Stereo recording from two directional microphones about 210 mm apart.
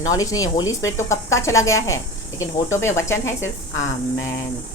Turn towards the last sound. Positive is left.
turn(degrees=15)  # may be behind; listen again after turning